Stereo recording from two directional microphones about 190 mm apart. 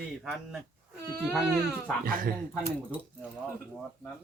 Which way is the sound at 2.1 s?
50° right (ahead or behind).